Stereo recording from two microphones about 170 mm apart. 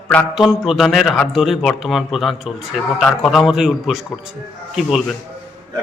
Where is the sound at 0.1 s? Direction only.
Centre (ahead or behind).